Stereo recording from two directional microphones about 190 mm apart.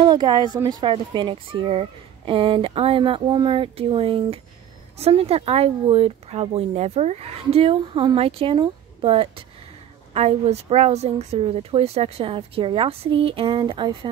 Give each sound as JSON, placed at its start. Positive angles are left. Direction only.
{"t": 0.0, "sound": "speech", "side_deg": -25}